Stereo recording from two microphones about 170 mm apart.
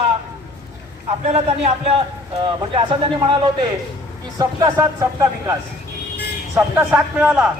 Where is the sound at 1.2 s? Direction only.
40° right (ahead or behind).